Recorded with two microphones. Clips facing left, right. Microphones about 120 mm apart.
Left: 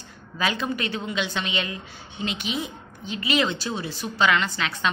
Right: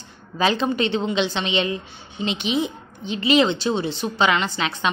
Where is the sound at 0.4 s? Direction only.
30° right (ahead or behind).